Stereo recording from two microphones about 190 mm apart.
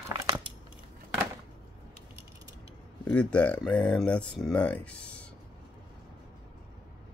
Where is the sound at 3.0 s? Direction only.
5° left (ahead or behind).